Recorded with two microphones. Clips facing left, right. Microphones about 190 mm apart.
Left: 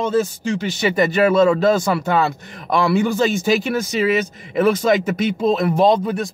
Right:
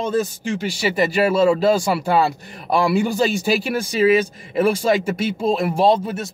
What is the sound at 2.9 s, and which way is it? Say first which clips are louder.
Speech: left 3 dB; 15° right (ahead or behind).